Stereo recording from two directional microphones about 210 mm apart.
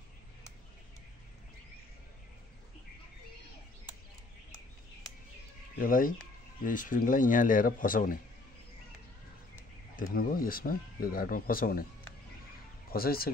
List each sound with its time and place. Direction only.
5.8 s speech: 40° left (ahead or behind)
10.1 s speech: 45° left (ahead or behind)
12.9 s speech: 45° left (ahead or behind)